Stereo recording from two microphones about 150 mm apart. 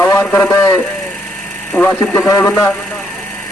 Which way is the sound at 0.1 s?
15° left (ahead or behind).